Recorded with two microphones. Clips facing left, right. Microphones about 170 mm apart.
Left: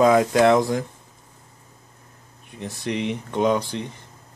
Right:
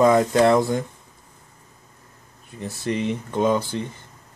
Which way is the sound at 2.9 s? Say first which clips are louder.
Right 1 dB; 70° left (ahead or behind).